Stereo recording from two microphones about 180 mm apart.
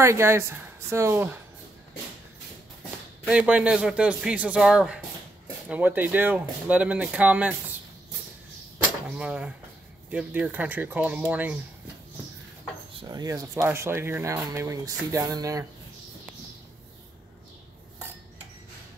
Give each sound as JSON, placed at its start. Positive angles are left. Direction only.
{"t": 0.0, "sound": "speech", "side_deg": -15}
{"t": 3.3, "sound": "a man's voice", "side_deg": -5}
{"t": 9.1, "sound": "a man's voice", "side_deg": -5}
{"t": 13.0, "sound": "speech", "side_deg": -20}